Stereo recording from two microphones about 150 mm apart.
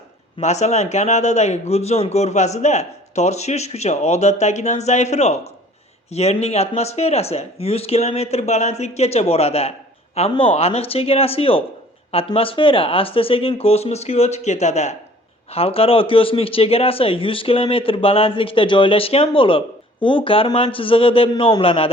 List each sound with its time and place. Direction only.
0.3 s a man's voice: 50° left (ahead or behind)